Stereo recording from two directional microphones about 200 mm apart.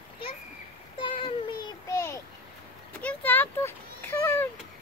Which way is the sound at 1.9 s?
15° left (ahead or behind).